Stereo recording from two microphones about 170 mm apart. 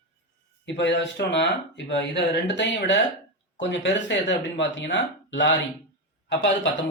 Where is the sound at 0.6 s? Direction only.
90° left.